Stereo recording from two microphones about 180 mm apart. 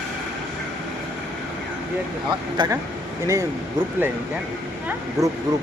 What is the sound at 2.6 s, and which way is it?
Speech, 25° right (ahead or behind).